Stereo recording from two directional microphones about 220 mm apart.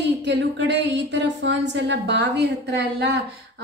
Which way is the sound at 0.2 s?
50° right (ahead or behind).